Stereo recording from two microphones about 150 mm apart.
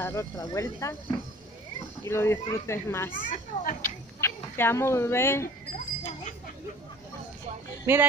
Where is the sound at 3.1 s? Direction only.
65° left (ahead or behind).